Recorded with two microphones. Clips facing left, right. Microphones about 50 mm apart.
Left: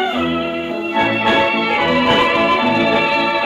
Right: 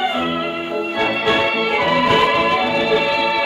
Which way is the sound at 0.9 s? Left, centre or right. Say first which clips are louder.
Left 4 dB; centre.